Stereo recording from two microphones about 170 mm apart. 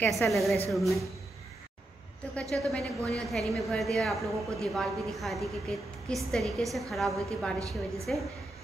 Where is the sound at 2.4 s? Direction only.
5° left (ahead or behind).